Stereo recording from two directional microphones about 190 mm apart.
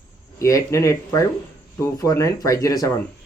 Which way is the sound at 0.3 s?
15° left (ahead or behind).